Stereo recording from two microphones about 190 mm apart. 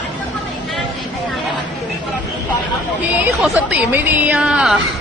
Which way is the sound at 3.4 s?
5° right (ahead or behind).